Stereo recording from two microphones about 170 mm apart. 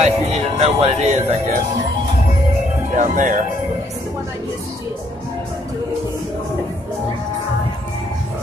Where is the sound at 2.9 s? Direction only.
50° right (ahead or behind).